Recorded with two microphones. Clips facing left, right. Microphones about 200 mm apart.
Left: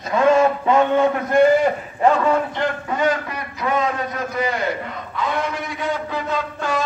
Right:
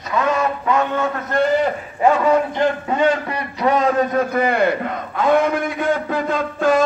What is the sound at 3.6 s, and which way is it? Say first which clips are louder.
Speech: right 5 dB; 35° right (ahead or behind).